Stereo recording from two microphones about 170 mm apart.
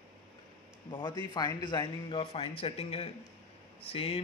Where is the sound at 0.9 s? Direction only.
30° left (ahead or behind).